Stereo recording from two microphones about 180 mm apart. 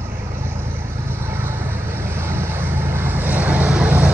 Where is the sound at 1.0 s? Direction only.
15° right (ahead or behind).